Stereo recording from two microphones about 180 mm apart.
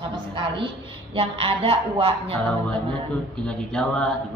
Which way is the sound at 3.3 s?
5° left (ahead or behind).